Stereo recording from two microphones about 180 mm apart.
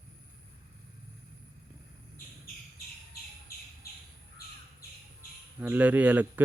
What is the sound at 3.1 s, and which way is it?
Bird, 60° left (ahead or behind).